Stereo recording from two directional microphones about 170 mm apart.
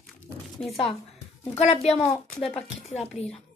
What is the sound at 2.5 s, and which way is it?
Speech, 40° left (ahead or behind).